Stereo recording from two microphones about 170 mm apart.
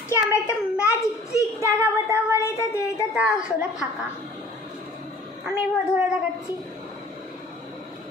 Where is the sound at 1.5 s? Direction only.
10° right (ahead or behind).